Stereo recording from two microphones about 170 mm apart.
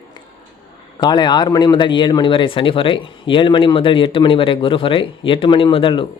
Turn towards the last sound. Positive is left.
turn(degrees=30)  # may be behind; listen again after turning